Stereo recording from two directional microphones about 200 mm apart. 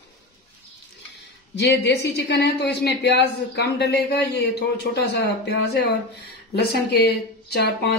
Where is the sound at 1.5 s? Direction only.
60° left (ahead or behind).